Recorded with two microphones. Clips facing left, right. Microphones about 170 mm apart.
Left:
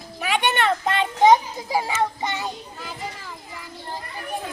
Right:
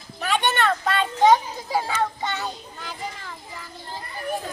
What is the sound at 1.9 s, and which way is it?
Child singing, 15° left (ahead or behind).